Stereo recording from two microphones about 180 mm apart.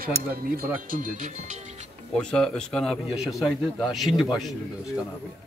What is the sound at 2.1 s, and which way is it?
A man's voice, 5° left (ahead or behind).